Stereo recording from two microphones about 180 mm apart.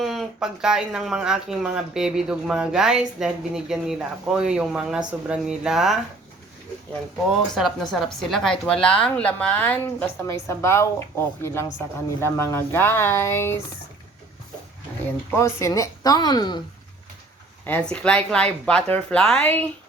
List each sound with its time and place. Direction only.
0.0 s speech: centre (ahead or behind)
7.5 s a woman's voice: centre (ahead or behind)
15.4 s a woman's voice: 15° left (ahead or behind)
17.7 s a woman's voice: 5° left (ahead or behind)